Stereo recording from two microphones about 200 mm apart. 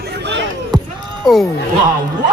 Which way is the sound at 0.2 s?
60° right (ahead or behind).